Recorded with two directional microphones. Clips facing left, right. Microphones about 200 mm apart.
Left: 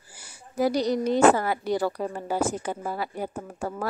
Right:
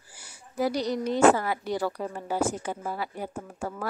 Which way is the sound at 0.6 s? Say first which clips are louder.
Left 4 dB; 40° left (ahead or behind).